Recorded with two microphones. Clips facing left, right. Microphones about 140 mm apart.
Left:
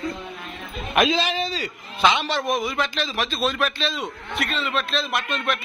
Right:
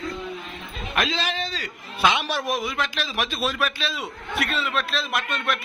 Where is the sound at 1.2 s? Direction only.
Centre (ahead or behind).